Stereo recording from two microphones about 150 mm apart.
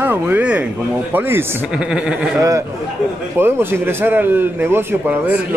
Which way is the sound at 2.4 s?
20° right (ahead or behind).